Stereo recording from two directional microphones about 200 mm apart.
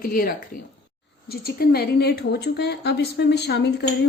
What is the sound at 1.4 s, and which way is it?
A woman's voice, 50° left (ahead or behind).